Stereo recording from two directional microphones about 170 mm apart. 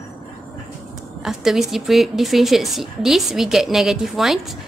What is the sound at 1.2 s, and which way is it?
A woman's voice, centre (ahead or behind).